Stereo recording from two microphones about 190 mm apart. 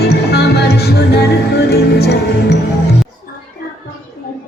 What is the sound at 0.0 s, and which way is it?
Music, 55° left (ahead or behind).